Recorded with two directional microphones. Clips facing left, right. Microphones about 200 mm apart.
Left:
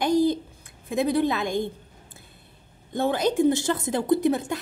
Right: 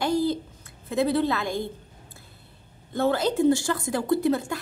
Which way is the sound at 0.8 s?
15° left (ahead or behind).